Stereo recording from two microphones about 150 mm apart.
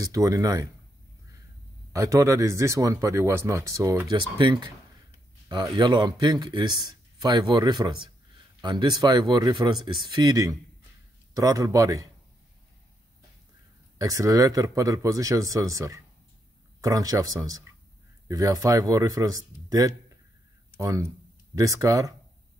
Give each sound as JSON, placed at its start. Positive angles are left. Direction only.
{"t": 0.0, "sound": "speech", "side_deg": -20}
{"t": 1.9, "sound": "speech", "side_deg": -25}
{"t": 13.9, "sound": "speech", "side_deg": -20}